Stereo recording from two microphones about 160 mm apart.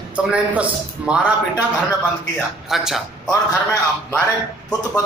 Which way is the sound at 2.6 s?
Centre (ahead or behind).